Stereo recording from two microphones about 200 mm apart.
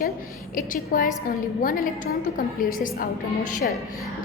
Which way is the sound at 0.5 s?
40° left (ahead or behind).